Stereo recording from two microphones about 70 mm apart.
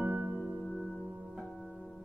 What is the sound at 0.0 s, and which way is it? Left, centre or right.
Music, right.